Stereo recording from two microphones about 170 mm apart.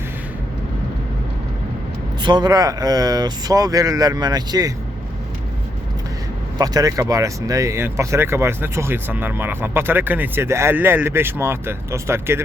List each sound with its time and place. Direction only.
2.2 s speech: 25° right (ahead or behind)
6.6 s speech: 20° right (ahead or behind)